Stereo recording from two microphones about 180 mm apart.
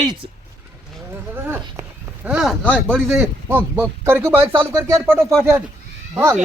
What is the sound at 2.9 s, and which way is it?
A man's voice, 5° right (ahead or behind).